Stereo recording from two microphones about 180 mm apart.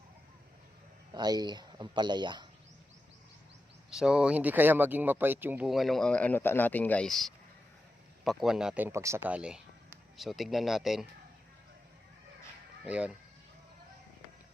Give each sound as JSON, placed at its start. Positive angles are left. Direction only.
{"t": 1.1, "sound": "speech", "side_deg": -20}
{"t": 3.8, "sound": "speech", "side_deg": -5}
{"t": 12.8, "sound": "speech", "side_deg": -5}